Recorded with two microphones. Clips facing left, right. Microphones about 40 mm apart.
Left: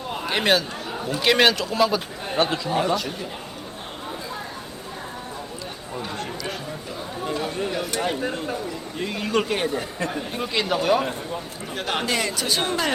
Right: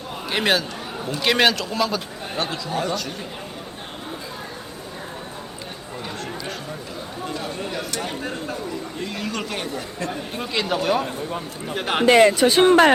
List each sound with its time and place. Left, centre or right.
0.3 s a man's voice: centre
2.4 s speech: left
7.3 s a sound: centre
7.9 s speech: centre
9.0 s speech: centre
10.1 s speech: centre
11.7 s a man's voice: centre
12.0 s speech: right
12.3 s speech: right